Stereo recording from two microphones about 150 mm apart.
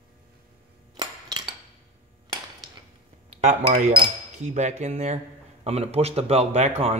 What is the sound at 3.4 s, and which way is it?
Speech, 50° right (ahead or behind).